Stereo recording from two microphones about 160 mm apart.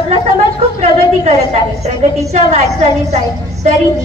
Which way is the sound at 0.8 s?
45° right (ahead or behind).